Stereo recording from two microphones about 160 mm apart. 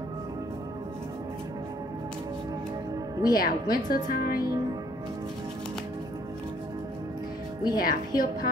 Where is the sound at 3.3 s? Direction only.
70° left (ahead or behind).